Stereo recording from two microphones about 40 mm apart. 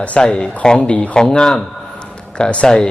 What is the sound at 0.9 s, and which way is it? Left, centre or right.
Speech, left.